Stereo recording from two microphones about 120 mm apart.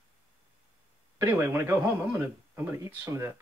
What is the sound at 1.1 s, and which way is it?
A man's voice, 20° right (ahead or behind).